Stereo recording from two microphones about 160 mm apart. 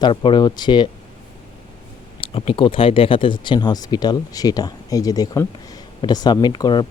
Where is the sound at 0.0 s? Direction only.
30° left (ahead or behind).